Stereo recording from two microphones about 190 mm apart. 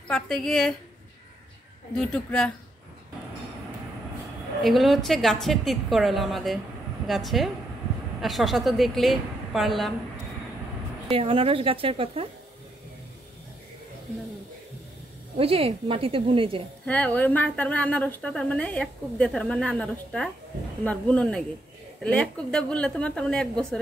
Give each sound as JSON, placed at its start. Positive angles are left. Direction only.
{"t": 0.1, "sound": "a woman's voice", "side_deg": 0}
{"t": 2.0, "sound": "a woman's voice", "side_deg": 5}
{"t": 4.6, "sound": "a woman's voice", "side_deg": 0}
{"t": 11.1, "sound": "a woman's voice", "side_deg": -30}
{"t": 15.3, "sound": "a woman's voice", "side_deg": -30}
{"t": 16.8, "sound": "a woman's voice", "side_deg": 5}